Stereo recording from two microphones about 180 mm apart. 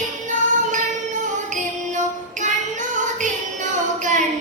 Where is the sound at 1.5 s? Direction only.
45° right (ahead or behind).